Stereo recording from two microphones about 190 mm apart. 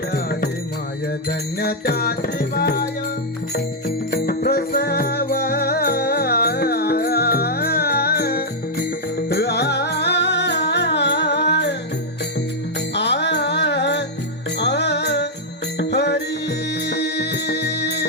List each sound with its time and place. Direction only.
1.3 s music: 55° left (ahead or behind)
12.9 s music: 65° left (ahead or behind)